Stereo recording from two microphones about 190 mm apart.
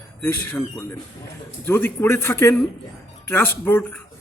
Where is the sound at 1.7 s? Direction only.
10° left (ahead or behind).